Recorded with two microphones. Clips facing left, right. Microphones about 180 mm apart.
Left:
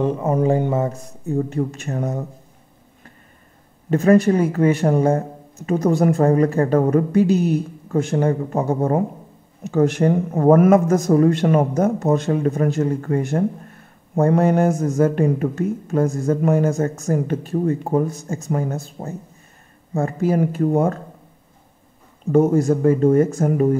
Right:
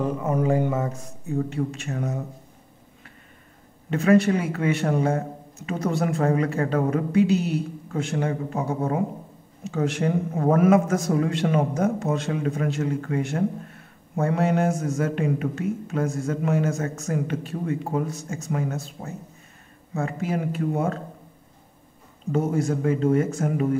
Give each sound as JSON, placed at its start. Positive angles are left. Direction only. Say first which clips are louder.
{"t": 0.0, "sound": "a man's voice", "louder": "left 5 dB", "side_deg": 25}
{"t": 3.9, "sound": "a man's voice", "louder": "left 4 dB", "side_deg": 40}
{"t": 22.2, "sound": "a man's voice", "louder": "left 8 dB", "side_deg": 50}